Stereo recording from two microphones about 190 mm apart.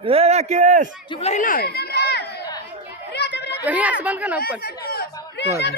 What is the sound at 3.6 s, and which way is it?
Speech, 10° right (ahead or behind).